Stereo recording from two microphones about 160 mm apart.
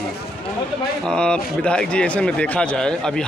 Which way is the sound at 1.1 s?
5° left (ahead or behind).